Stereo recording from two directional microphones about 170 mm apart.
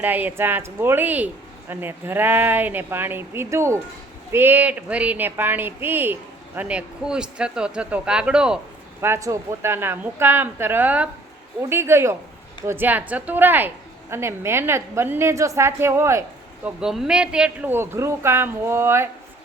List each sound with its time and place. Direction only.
0.0 s speech: 10° right (ahead or behind)
9.0 s speech: 15° right (ahead or behind)
16.6 s speech: 5° right (ahead or behind)